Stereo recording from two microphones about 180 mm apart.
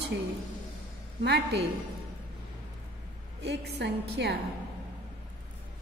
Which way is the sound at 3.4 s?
70° right (ahead or behind).